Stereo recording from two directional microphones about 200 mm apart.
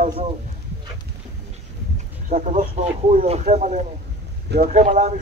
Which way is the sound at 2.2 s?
40° right (ahead or behind).